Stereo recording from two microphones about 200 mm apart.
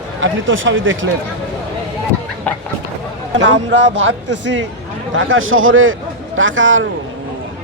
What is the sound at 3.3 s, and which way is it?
A man's voice, 70° right (ahead or behind).